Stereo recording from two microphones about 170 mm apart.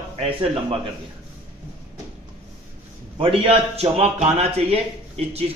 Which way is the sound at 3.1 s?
35° right (ahead or behind).